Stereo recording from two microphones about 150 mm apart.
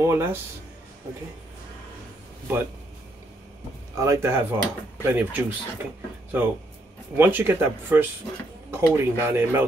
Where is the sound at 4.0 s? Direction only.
20° right (ahead or behind).